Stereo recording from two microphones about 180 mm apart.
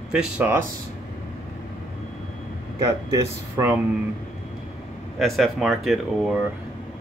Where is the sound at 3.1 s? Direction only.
20° right (ahead or behind).